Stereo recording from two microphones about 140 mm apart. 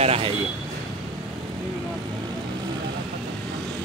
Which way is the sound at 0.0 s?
45° right (ahead or behind).